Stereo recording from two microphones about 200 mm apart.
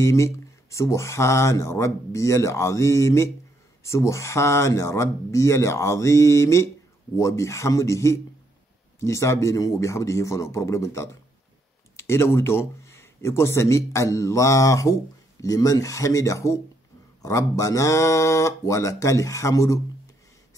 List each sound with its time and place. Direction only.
0.0 s speech: 15° left (ahead or behind)